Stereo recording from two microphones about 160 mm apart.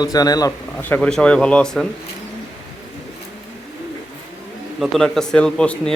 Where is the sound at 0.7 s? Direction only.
10° left (ahead or behind).